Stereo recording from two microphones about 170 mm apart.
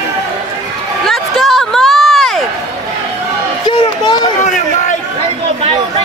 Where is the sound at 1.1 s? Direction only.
Centre (ahead or behind).